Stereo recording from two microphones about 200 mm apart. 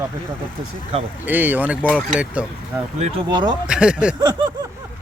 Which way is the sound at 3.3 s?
20° right (ahead or behind).